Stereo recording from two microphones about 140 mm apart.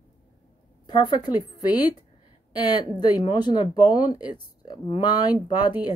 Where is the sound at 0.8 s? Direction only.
30° left (ahead or behind).